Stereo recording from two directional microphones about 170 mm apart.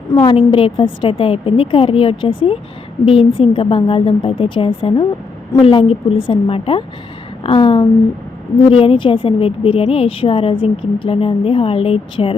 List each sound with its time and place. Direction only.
0.1 s a woman's voice: 30° left (ahead or behind)
7.4 s a sound: 30° left (ahead or behind)
8.7 s a woman's voice: 30° left (ahead or behind)